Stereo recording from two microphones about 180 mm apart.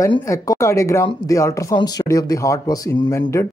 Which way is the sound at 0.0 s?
15° left (ahead or behind).